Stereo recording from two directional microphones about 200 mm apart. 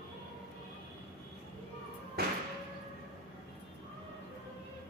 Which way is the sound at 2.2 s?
50° right (ahead or behind).